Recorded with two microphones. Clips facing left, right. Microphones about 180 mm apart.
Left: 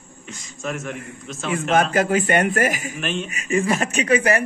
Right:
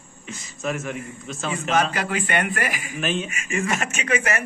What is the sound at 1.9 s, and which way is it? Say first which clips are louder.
A man's voice: left 6 dB; 45° left (ahead or behind).